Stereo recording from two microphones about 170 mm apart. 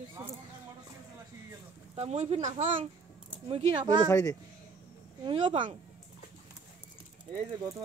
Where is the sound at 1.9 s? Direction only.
40° right (ahead or behind).